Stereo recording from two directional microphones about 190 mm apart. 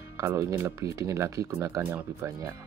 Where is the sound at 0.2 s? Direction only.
15° right (ahead or behind).